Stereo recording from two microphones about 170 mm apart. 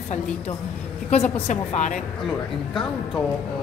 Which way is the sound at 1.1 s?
40° left (ahead or behind).